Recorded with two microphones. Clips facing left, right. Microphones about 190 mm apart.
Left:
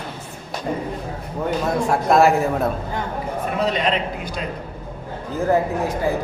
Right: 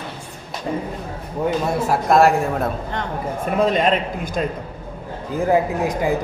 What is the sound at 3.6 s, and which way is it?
Speech, 50° right (ahead or behind).